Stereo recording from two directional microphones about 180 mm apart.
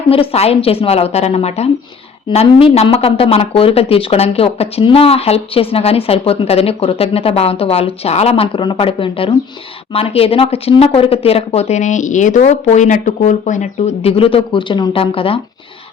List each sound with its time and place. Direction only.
0.1 s speech: 30° left (ahead or behind)